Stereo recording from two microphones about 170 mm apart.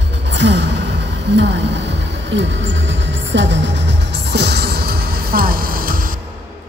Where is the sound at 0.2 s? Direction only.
90° right; by 6.1 s 55° right (ahead or behind).